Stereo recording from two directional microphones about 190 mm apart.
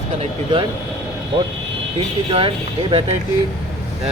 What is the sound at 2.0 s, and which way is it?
Speech, 30° right (ahead or behind).